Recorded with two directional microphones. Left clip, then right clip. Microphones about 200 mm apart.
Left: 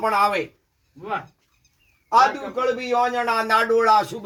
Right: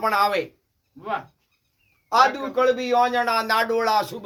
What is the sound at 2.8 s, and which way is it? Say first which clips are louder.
Speech: right 1 dB; 15° right (ahead or behind).